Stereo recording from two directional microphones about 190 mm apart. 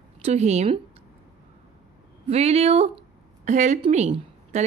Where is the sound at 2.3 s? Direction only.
35° right (ahead or behind).